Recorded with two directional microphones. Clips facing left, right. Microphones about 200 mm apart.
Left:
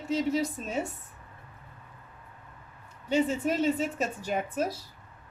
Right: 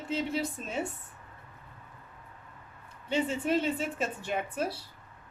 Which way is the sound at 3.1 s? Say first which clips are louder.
Left 2 dB; 45° left (ahead or behind).